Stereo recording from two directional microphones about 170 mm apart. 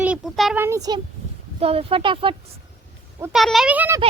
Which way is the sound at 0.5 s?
15° right (ahead or behind).